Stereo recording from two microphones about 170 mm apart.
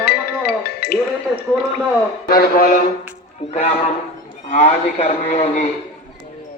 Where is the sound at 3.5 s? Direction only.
40° left (ahead or behind).